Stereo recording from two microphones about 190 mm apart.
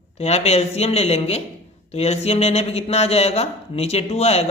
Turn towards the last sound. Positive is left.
turn(degrees=35)  # may be behind; listen again after turning